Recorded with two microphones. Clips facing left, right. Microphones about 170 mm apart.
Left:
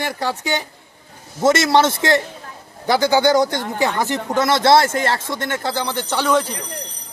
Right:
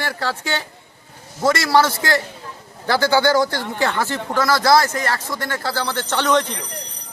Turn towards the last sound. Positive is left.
turn(degrees=5)  # may be behind; listen again after turning